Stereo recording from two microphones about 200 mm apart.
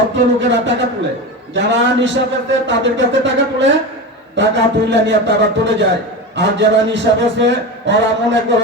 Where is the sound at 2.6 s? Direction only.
65° right (ahead or behind).